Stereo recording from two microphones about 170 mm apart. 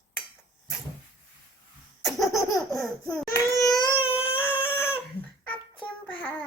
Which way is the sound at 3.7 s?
30° left (ahead or behind).